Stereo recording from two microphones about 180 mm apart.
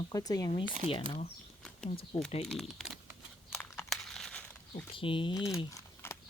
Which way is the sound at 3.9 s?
Centre (ahead or behind).